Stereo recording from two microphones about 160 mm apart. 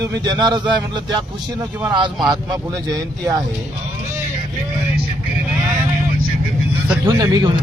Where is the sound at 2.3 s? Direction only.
20° right (ahead or behind).